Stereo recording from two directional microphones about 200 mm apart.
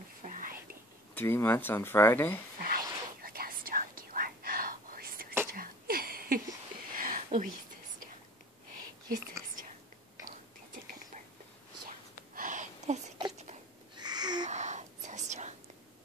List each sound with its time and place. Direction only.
0.2 s whispering: 40° right (ahead or behind)
1.1 s speech: 10° left (ahead or behind)
2.6 s whispering: 45° right (ahead or behind)
5.5 s a sound: 45° right (ahead or behind)
12.4 s a sound: 40° right (ahead or behind)
13.9 s babbling: 20° right (ahead or behind)
14.5 s whispering: 35° right (ahead or behind)